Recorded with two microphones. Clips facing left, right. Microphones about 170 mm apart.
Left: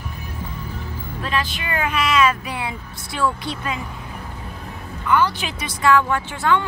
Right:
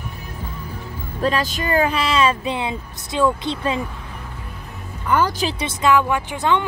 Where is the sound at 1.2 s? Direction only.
40° right (ahead or behind).